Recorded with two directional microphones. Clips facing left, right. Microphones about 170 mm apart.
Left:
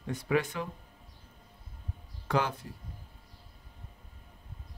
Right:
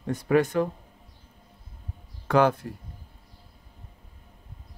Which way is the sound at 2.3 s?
60° right (ahead or behind).